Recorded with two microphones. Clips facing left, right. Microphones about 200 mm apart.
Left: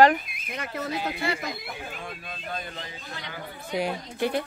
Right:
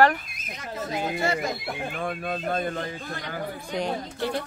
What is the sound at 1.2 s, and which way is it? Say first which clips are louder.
Speech: right 4 dB; 45° right (ahead or behind).